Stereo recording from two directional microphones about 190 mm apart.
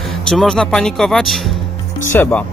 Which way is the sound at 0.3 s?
5° left (ahead or behind).